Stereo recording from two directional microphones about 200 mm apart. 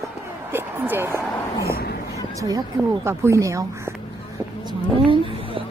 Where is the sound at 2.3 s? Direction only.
20° right (ahead or behind).